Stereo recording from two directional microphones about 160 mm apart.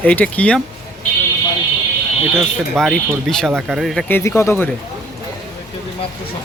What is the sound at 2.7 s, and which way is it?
Speech, centre (ahead or behind).